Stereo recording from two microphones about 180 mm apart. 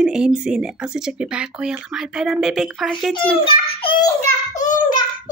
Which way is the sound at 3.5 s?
30° left (ahead or behind).